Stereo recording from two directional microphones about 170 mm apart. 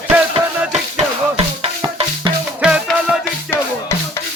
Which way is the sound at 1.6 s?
30° right (ahead or behind).